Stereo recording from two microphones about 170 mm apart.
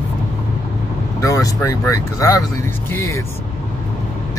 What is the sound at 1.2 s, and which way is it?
Speech, 20° left (ahead or behind).